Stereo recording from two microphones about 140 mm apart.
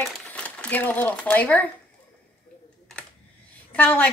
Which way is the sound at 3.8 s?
10° left (ahead or behind).